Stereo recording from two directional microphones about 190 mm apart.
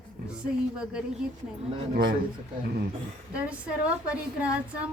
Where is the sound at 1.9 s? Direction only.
50° right (ahead or behind).